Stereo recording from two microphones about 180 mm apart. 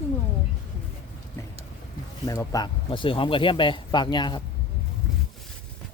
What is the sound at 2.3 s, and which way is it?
Speech, 20° left (ahead or behind).